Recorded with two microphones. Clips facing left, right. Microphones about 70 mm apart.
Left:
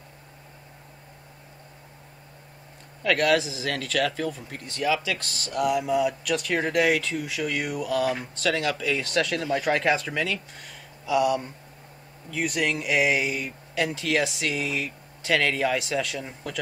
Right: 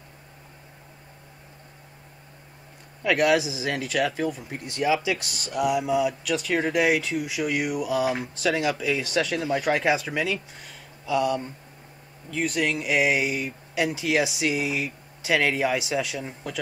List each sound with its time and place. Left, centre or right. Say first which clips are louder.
3.0 s speech: right 1 dB; centre